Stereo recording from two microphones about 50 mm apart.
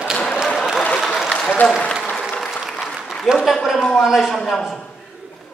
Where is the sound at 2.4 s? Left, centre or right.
Centre.